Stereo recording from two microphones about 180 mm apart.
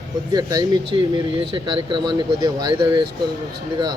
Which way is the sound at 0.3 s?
20° right (ahead or behind).